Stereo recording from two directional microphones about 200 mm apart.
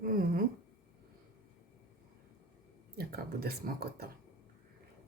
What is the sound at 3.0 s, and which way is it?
Speech, 50° right (ahead or behind).